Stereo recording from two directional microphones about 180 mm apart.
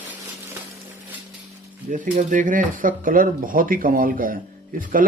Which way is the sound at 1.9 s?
45° right (ahead or behind).